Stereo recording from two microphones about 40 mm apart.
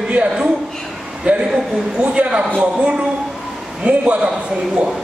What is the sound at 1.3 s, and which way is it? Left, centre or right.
A man's voice, right.